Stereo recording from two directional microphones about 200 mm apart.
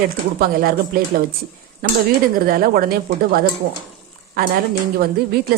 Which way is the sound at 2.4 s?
50° right (ahead or behind).